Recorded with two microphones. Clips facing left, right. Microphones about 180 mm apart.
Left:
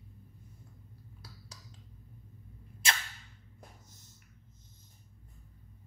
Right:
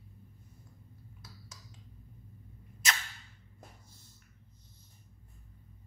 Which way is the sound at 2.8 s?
30° left (ahead or behind).